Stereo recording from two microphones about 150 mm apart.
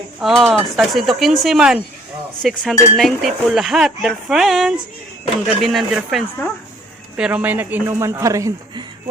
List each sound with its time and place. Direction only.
0.2 s dishes: centre (ahead or behind)
7.2 s a man's voice: 10° right (ahead or behind)